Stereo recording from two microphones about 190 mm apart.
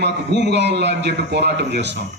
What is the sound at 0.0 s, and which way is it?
A man's voice, 60° right (ahead or behind).